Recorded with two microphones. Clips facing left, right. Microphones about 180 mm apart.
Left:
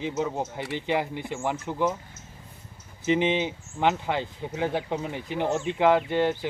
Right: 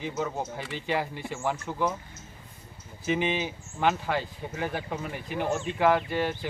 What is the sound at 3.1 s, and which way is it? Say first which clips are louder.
Speech: left 4 dB; 20° left (ahead or behind).